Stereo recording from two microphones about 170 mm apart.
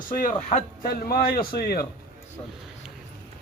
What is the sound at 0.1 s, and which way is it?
A man's voice, 55° left (ahead or behind).